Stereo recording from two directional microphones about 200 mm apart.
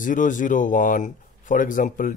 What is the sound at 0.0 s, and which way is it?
Speech, 40° left (ahead or behind).